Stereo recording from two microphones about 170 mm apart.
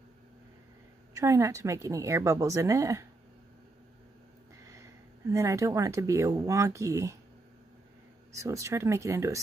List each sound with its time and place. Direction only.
1.1 s a woman's voice: 20° right (ahead or behind)
5.3 s a woman's voice: 20° right (ahead or behind)
8.3 s a woman's voice: 20° right (ahead or behind)